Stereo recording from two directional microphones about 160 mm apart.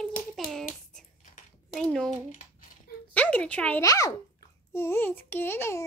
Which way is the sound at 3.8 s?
20° left (ahead or behind).